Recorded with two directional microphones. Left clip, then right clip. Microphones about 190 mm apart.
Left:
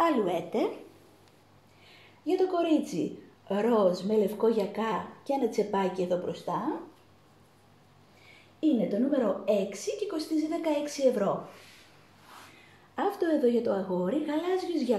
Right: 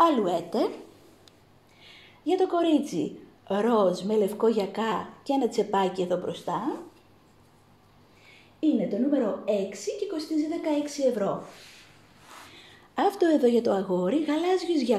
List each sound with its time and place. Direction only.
0.0 s a sound: 35° right (ahead or behind)
2.2 s a woman's voice: 30° right (ahead or behind)
8.5 s a woman's voice: 25° right (ahead or behind)
12.9 s a woman's voice: 50° right (ahead or behind)